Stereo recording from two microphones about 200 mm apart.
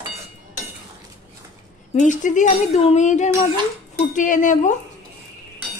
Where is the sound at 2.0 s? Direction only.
40° left (ahead or behind).